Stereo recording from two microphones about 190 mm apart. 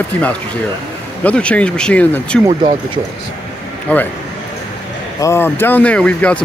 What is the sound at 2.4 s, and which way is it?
Speech, 25° right (ahead or behind).